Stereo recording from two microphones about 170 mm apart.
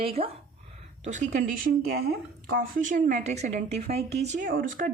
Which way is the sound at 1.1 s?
45° right (ahead or behind).